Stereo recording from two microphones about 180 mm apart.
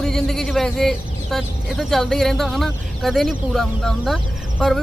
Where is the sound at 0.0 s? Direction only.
Centre (ahead or behind).